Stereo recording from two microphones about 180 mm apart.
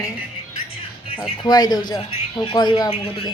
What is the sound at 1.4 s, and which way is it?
Speech, 20° left (ahead or behind).